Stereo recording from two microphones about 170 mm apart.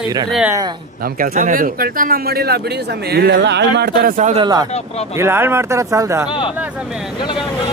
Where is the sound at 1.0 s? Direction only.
55° right (ahead or behind); by 3.7 s 90° right.